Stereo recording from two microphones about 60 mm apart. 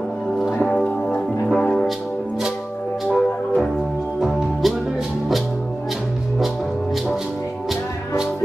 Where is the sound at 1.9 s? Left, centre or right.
Centre.